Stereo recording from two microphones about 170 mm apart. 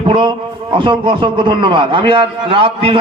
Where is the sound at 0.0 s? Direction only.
30° right (ahead or behind).